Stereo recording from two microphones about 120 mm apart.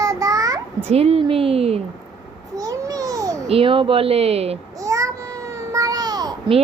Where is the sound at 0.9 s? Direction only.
60° right (ahead or behind).